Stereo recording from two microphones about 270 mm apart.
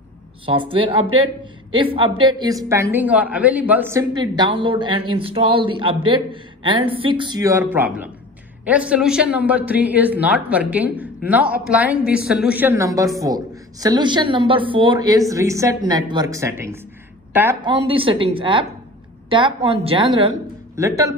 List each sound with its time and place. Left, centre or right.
0.5 s a woman's voice: centre
17.6 s speech: centre